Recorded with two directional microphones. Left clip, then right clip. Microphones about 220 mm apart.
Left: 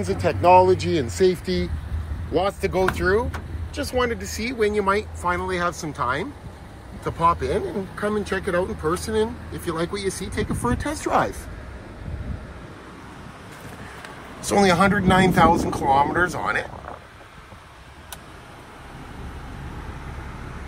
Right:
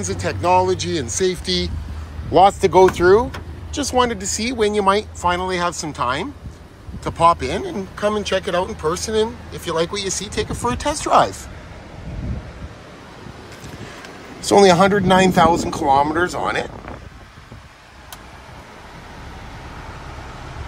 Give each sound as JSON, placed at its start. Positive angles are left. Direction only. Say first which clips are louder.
{"t": 0.0, "sound": "speech", "louder": "left 2 dB", "side_deg": 5}
{"t": 2.3, "sound": "speech", "louder": "right 10 dB", "side_deg": -30}
{"t": 3.1, "sound": "speech", "louder": "right 7 dB", "side_deg": -20}
{"t": 14.4, "sound": "speech", "louder": "right 6 dB", "side_deg": -15}